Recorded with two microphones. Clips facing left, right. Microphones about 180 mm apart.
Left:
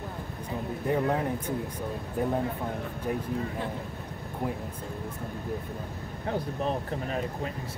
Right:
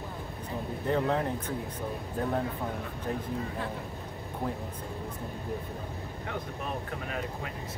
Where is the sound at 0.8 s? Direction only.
10° left (ahead or behind).